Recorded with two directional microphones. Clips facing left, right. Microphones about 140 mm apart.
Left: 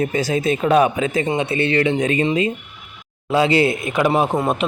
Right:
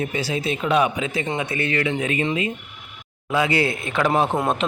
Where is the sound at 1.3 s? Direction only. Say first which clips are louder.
Left 5 dB; 25° left (ahead or behind).